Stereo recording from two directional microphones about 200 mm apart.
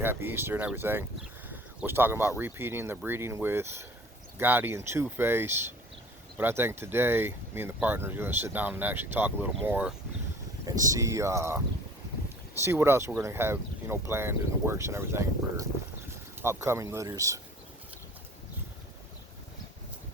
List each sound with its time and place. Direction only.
0.0 s speech: 10° right (ahead or behind)
12.5 s speech: 15° right (ahead or behind)